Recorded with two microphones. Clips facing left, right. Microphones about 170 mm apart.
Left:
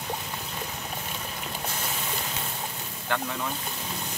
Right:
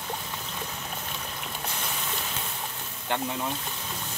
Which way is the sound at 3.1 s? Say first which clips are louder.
Even; 20° right (ahead or behind).